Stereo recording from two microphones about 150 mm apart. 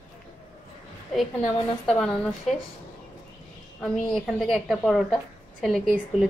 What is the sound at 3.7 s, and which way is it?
Speech, 5° left (ahead or behind).